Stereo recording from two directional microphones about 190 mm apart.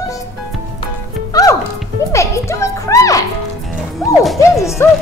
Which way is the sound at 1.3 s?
20° left (ahead or behind).